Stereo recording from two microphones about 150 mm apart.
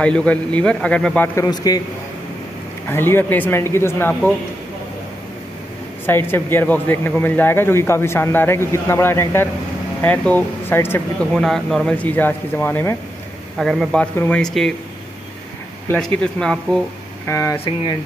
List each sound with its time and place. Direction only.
0.0 s a man's voice: 5° left (ahead or behind); by 1.8 s 25° left (ahead or behind)
2.9 s a man's voice: 15° left (ahead or behind)
6.0 s a man's voice: 15° left (ahead or behind)
11.3 s a man's voice: 5° left (ahead or behind)
13.6 s speech: centre (ahead or behind)
14.1 s a man's voice: 15° left (ahead or behind)
14.4 s speech: 5° left (ahead or behind)
16.0 s speech: 5° left (ahead or behind)
17.3 s speech: 20° left (ahead or behind)